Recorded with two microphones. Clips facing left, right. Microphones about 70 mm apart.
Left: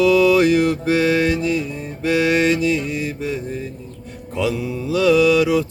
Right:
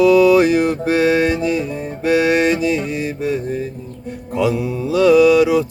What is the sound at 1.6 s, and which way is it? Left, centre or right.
Music, centre.